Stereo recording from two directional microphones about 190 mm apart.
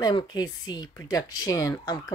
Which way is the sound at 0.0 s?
20° left (ahead or behind).